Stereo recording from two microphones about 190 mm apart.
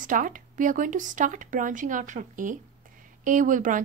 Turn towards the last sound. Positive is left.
turn(degrees=-45)  # may be behind; listen again after turning